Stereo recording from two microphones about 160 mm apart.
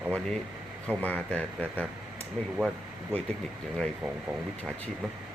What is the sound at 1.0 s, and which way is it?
Speech, 10° left (ahead or behind).